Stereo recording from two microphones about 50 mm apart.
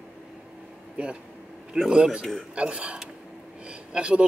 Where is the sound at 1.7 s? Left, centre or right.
Centre.